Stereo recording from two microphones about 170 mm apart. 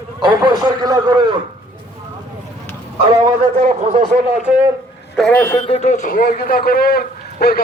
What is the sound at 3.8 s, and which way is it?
Speech, 35° right (ahead or behind).